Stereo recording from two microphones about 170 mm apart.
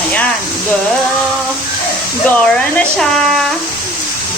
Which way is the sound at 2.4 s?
5° left (ahead or behind).